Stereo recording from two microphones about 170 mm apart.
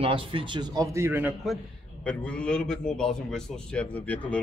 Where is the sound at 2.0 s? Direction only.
5° left (ahead or behind).